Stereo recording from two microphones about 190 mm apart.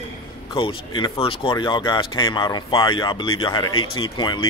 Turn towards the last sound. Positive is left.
turn(degrees=25)  # may be behind; listen again after turning